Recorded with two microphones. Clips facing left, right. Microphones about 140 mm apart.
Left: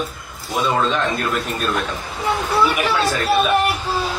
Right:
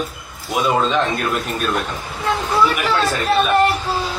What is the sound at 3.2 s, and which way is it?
Child singing, 5° left (ahead or behind).